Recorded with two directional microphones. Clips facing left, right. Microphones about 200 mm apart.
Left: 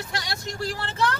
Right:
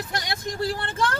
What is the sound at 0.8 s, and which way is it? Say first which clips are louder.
Speech: even; 50° right (ahead or behind).